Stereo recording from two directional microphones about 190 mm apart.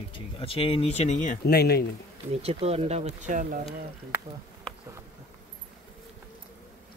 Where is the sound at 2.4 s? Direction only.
30° right (ahead or behind).